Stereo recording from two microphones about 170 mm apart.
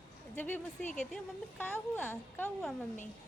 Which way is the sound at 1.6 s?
10° left (ahead or behind).